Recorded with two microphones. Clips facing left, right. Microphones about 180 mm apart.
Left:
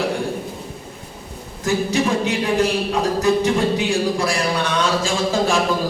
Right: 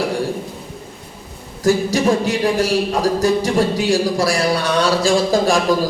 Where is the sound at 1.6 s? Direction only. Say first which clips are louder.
Right 4 dB; 35° right (ahead or behind).